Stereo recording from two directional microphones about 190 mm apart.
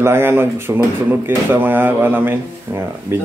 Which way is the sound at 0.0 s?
10° right (ahead or behind).